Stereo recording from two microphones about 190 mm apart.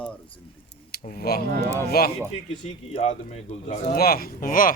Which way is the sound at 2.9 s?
35° left (ahead or behind).